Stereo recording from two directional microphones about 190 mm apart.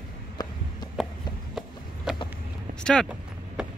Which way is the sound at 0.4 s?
20° left (ahead or behind).